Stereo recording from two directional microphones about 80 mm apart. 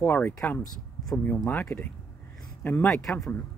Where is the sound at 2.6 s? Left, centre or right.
Left.